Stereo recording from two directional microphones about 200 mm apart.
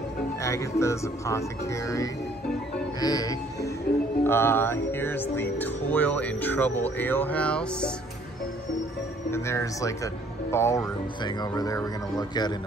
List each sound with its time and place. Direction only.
0.4 s music: 15° left (ahead or behind)
3.0 s speech: 20° left (ahead or behind)
4.2 s music: 10° left (ahead or behind)
9.3 s music: 15° left (ahead or behind)